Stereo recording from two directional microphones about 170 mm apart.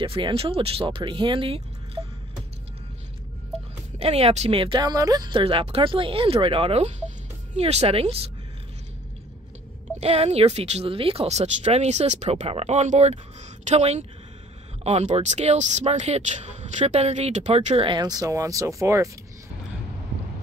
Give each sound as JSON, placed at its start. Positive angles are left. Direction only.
{"t": 0.0, "sound": "speech", "side_deg": -30}
{"t": 4.0, "sound": "speech", "side_deg": -35}
{"t": 9.9, "sound": "speech", "side_deg": -35}